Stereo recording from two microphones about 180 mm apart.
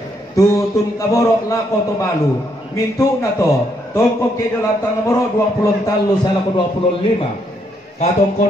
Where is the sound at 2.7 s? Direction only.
15° left (ahead or behind).